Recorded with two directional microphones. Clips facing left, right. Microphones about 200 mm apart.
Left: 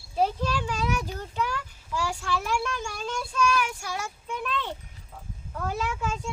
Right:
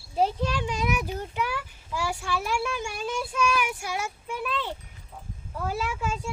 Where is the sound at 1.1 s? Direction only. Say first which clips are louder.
Right 1 dB; 15° right (ahead or behind).